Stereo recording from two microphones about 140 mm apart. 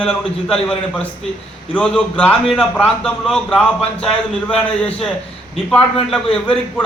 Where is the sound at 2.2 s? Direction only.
10° left (ahead or behind).